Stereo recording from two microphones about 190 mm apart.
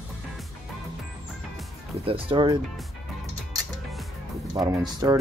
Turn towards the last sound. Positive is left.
turn(degrees=-20)  # may be behind; listen again after turning